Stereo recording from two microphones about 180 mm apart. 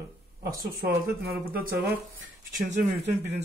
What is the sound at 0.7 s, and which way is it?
Speech, 55° right (ahead or behind).